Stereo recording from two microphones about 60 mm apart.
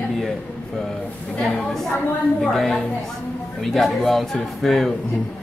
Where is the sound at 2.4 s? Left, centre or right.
Centre.